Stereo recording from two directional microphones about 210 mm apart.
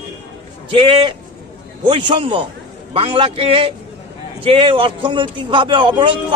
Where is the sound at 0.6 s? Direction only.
25° right (ahead or behind).